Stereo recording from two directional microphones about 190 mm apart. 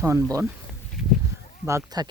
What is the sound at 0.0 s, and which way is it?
Speech, 15° right (ahead or behind).